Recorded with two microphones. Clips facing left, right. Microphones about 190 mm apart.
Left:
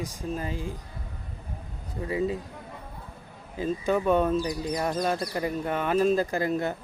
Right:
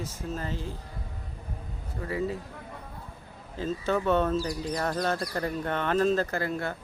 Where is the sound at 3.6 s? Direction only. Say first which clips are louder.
Left 2 dB; 15° left (ahead or behind).